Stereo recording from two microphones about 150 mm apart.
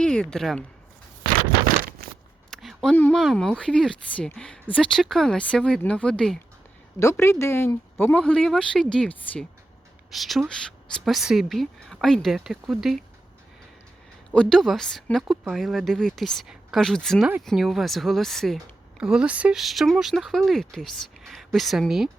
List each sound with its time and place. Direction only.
0.0 s speech: 5° left (ahead or behind)
1.2 s a sound: 70° right (ahead or behind)
2.5 s a sound: centre (ahead or behind)
2.9 s speech: 10° left (ahead or behind)
7.0 s speech: 20° left (ahead or behind); by 13.1 s centre (ahead or behind)
14.3 s speech: centre (ahead or behind)